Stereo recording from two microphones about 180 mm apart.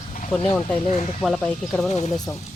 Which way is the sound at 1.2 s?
5° left (ahead or behind).